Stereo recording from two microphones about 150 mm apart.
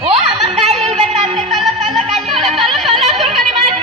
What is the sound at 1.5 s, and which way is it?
Music, centre (ahead or behind).